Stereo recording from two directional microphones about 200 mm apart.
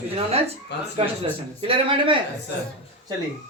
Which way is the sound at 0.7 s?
60° left (ahead or behind).